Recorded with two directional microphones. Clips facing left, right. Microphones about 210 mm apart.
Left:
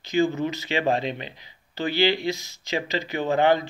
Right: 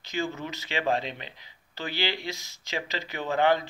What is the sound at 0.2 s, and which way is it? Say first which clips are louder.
Speech: left 9 dB; 20° left (ahead or behind).